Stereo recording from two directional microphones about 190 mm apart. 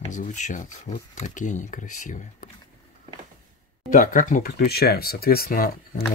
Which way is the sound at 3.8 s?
45° left (ahead or behind).